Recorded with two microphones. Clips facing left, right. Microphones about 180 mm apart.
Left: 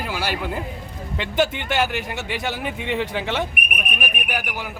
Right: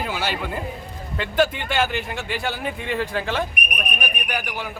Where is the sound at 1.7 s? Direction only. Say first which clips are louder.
Even; 15° left (ahead or behind).